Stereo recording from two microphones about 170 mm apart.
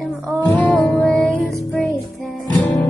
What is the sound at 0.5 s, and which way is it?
Music, 15° left (ahead or behind).